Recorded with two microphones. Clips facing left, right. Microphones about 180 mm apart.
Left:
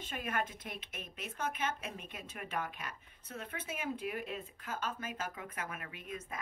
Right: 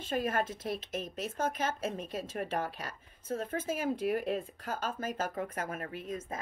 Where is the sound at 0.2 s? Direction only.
40° right (ahead or behind).